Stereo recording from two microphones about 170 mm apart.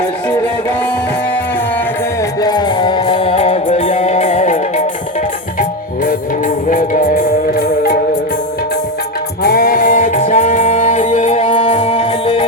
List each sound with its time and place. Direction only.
2.4 s music: 25° left (ahead or behind); by 4.5 s 45° left (ahead or behind)
6.7 s music: 50° left (ahead or behind)
9.4 s music: 60° left (ahead or behind); by 12.5 s 30° left (ahead or behind)